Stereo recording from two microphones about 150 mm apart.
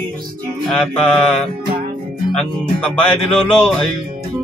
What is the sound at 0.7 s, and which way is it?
Speech, 5° left (ahead or behind).